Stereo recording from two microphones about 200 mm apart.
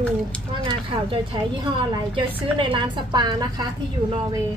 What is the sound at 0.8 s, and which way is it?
A woman's voice, 25° right (ahead or behind).